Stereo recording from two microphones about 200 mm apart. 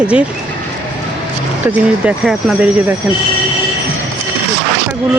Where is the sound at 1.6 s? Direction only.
5° right (ahead or behind).